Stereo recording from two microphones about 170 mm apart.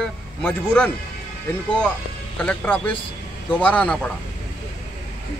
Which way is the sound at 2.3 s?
10° left (ahead or behind).